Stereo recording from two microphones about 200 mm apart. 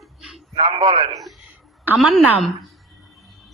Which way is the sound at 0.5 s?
25° right (ahead or behind).